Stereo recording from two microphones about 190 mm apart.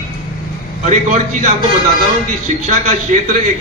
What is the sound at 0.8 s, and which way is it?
Speech, 40° right (ahead or behind).